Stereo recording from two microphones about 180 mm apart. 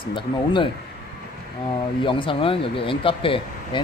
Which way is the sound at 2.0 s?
30° left (ahead or behind).